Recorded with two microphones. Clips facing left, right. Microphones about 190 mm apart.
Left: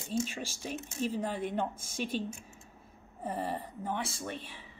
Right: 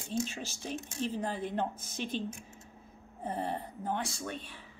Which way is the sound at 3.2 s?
5° left (ahead or behind).